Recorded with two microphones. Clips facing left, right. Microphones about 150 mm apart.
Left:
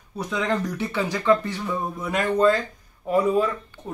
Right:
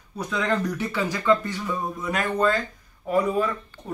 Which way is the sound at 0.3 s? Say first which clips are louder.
Even; 10° left (ahead or behind).